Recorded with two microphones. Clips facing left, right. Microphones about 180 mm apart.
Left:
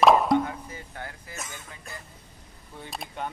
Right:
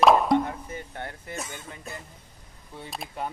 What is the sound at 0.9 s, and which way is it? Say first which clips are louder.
Speech: right 2 dB; 30° right (ahead or behind).